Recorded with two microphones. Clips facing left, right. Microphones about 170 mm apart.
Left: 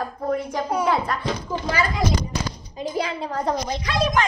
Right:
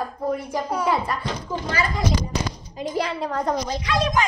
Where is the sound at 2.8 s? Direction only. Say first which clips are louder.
Right 1 dB; 30° left (ahead or behind).